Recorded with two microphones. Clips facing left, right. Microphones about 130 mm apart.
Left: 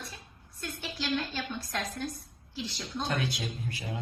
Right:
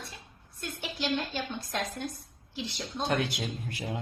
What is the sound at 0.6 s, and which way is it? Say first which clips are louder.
A woman's voice: right 2 dB; 20° right (ahead or behind).